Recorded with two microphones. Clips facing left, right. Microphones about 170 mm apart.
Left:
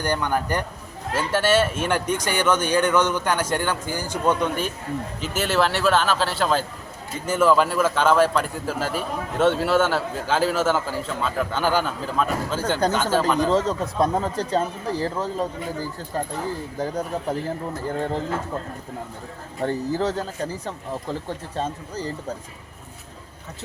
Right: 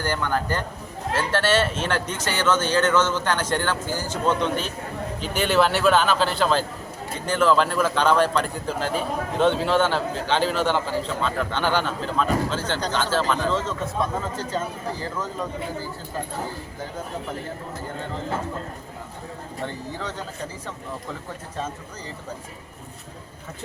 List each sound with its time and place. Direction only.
0.0 s a man's voice: 15° left (ahead or behind)
13.4 s speech: 40° left (ahead or behind)
19.6 s speech: 35° left (ahead or behind)